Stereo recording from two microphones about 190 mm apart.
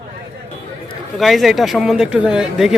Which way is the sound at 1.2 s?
Centre (ahead or behind).